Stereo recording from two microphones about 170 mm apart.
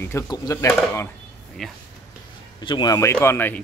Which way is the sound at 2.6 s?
25° left (ahead or behind).